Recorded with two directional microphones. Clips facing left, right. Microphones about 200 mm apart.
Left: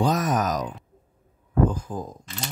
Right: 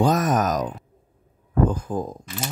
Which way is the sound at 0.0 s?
50° right (ahead or behind).